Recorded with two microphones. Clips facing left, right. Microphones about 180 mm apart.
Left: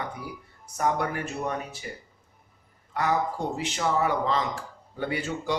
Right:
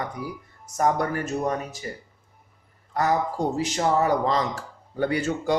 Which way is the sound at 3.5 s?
40° right (ahead or behind).